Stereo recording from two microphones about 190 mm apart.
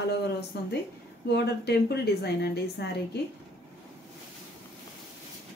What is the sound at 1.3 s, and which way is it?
A woman's voice, 60° left (ahead or behind).